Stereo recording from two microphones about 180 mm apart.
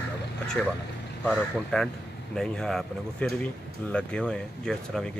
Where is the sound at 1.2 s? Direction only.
5° left (ahead or behind).